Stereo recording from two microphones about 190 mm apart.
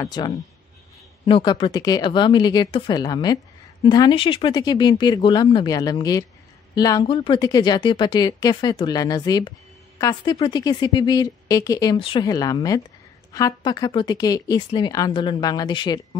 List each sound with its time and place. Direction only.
0.0 s speech: 20° left (ahead or behind)